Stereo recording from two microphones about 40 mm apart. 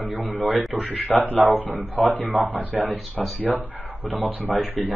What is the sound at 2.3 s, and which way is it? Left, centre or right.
Speech, right.